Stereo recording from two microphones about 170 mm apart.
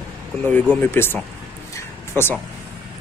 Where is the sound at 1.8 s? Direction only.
15° left (ahead or behind).